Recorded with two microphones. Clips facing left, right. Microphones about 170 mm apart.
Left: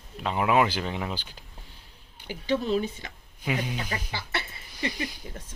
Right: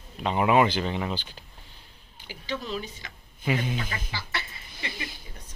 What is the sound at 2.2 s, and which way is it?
Speech, 55° left (ahead or behind).